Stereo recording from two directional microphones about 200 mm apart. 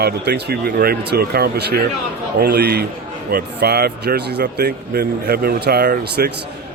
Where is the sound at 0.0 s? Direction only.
55° right (ahead or behind).